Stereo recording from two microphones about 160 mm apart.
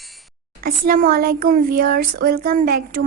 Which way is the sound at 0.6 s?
60° right (ahead or behind).